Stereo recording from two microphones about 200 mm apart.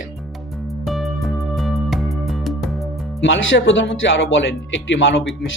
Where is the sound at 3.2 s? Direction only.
70° left (ahead or behind).